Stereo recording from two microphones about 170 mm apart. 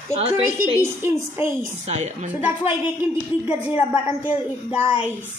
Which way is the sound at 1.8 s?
40° right (ahead or behind).